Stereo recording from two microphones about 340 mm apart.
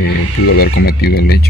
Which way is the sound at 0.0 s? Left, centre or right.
Left.